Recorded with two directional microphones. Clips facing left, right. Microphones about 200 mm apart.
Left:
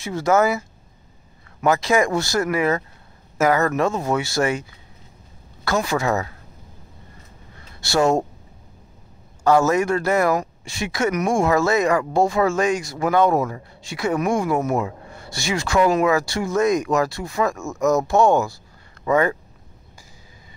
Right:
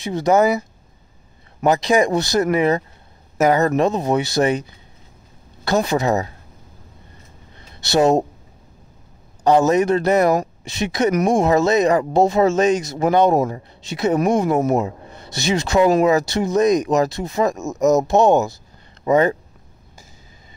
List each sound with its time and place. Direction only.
0.0 s speech: 20° right (ahead or behind)
5.9 s speech: 20° right (ahead or behind)
7.5 s a sound: 20° right (ahead or behind)
9.4 s speech: 20° right (ahead or behind)